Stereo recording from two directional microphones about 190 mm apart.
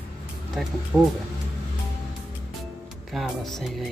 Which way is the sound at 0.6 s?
5° right (ahead or behind).